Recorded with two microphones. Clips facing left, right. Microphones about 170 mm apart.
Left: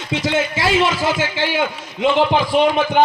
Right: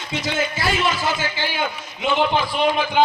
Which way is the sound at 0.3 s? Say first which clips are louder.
Left 6 dB; 90° left.